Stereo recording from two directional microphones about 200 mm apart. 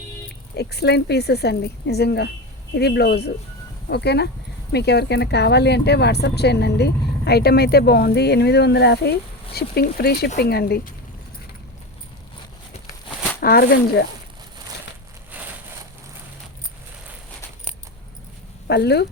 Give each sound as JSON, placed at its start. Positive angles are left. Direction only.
{"t": 0.5, "sound": "speech", "side_deg": 55}
{"t": 13.4, "sound": "speech", "side_deg": 50}
{"t": 15.3, "sound": "a sound", "side_deg": -10}
{"t": 18.7, "sound": "speech", "side_deg": 55}